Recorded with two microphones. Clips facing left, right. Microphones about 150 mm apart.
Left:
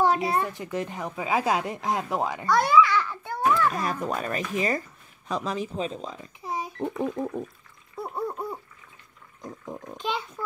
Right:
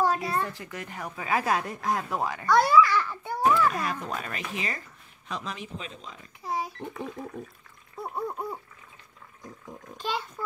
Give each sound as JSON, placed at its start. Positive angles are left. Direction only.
{"t": 0.0, "sound": "a woman's voice", "side_deg": 20}
{"t": 2.5, "sound": "babbling", "side_deg": 0}
{"t": 4.0, "sound": "speech", "side_deg": 40}
{"t": 6.4, "sound": "pig", "side_deg": 15}
{"t": 7.0, "sound": "a sound", "side_deg": 40}
{"t": 8.0, "sound": "a sound", "side_deg": 0}
{"t": 9.9, "sound": "a child's voice", "side_deg": 0}